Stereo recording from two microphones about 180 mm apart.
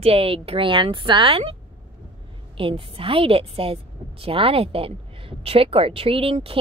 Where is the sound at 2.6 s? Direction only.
30° right (ahead or behind).